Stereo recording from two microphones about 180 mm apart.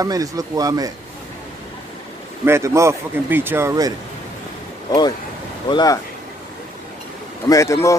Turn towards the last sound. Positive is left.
turn(degrees=15)  # may be behind; listen again after turning